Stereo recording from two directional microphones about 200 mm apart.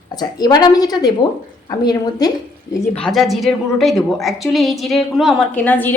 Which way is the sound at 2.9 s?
5° left (ahead or behind).